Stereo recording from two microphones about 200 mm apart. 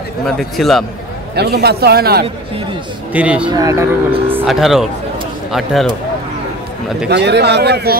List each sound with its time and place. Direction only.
0.4 s a man's voice: centre (ahead or behind)
1.3 s a man's voice: 55° right (ahead or behind)
3.1 s speech: 5° right (ahead or behind)
3.4 s a man's voice: 15° right (ahead or behind); by 5.9 s centre (ahead or behind)
7.1 s speech: 55° right (ahead or behind)